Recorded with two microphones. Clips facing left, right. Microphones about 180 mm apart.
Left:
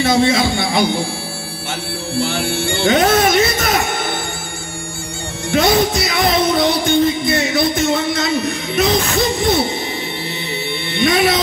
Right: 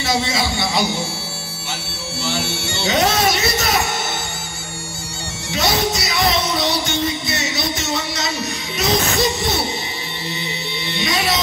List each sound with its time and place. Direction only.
0.0 s music: 55° left (ahead or behind)
2.1 s music: 55° left (ahead or behind)
5.5 s music: 55° left (ahead or behind)
10.9 s music: 55° left (ahead or behind)